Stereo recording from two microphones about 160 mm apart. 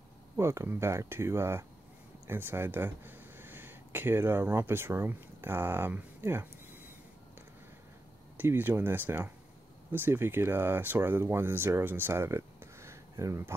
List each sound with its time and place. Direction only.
0.4 s speech: 15° right (ahead or behind)
8.4 s speech: 15° right (ahead or behind)